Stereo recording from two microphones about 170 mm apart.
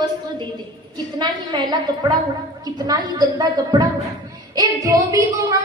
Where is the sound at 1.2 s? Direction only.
25° right (ahead or behind).